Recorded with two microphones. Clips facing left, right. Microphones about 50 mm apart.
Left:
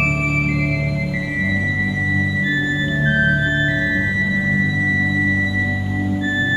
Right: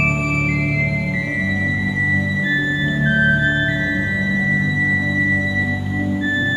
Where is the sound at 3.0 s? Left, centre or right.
Centre.